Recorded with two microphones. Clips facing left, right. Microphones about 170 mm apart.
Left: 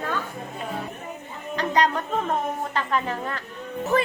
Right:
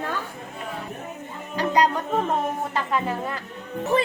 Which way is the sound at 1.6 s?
10° right (ahead or behind).